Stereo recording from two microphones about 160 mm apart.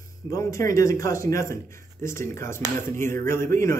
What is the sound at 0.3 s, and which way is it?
A man's voice, 20° left (ahead or behind).